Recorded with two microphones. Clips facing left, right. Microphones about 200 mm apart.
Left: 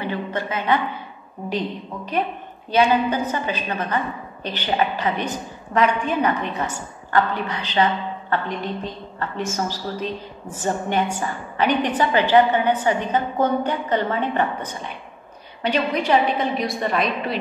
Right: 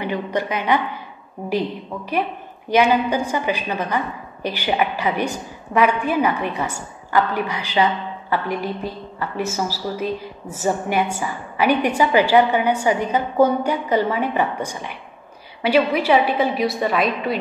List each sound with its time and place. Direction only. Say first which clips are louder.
0.0 s a woman's voice: right 3 dB; 15° right (ahead or behind)
2.7 s a woman's voice: right 1 dB; 15° right (ahead or behind)